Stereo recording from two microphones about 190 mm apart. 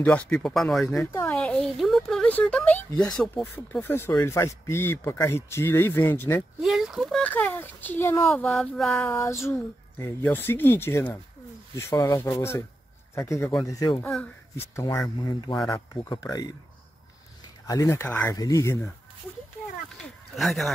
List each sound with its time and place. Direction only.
0.0 s speech: 5° left (ahead or behind)
6.6 s speech: centre (ahead or behind)
9.1 s speech: 15° left (ahead or behind)
17.6 s speech: 15° left (ahead or behind)
20.3 s speech: centre (ahead or behind)